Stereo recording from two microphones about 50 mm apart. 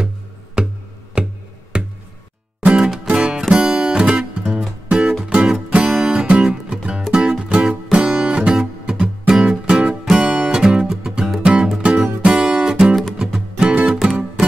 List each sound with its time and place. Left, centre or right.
0.6 s music: centre
11.4 s music: centre